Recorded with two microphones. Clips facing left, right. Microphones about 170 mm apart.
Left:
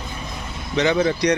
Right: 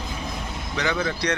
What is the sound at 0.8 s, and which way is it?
Speech, 25° left (ahead or behind).